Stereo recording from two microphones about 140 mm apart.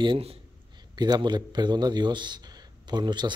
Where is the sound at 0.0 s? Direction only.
40° right (ahead or behind).